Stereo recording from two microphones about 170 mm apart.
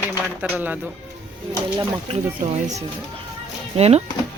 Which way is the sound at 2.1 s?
40° right (ahead or behind).